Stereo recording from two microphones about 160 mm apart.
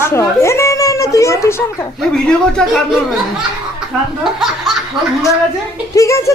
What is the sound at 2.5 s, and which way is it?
Speech, 5° left (ahead or behind).